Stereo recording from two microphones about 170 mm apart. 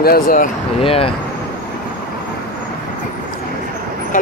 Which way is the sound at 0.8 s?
35° left (ahead or behind).